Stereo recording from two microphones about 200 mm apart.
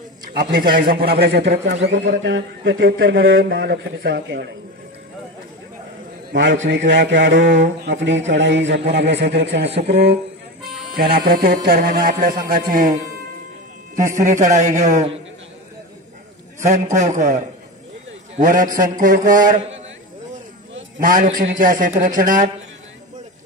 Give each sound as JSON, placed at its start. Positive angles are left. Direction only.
{"t": 0.3, "sound": "a man's voice", "side_deg": -50}
{"t": 1.9, "sound": "mantra", "side_deg": -60}
{"t": 6.3, "sound": "mantra", "side_deg": -65}
{"t": 11.0, "sound": "a man's voice", "side_deg": -50}
{"t": 14.2, "sound": "a man's voice", "side_deg": -35}
{"t": 16.6, "sound": "a man's voice", "side_deg": -35}
{"t": 21.0, "sound": "a man's voice", "side_deg": -45}